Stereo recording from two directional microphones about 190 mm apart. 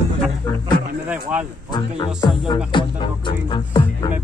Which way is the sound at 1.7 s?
25° left (ahead or behind).